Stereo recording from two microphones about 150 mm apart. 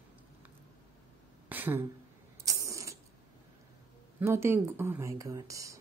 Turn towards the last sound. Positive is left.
turn(degrees=-20)  # may be behind; listen again after turning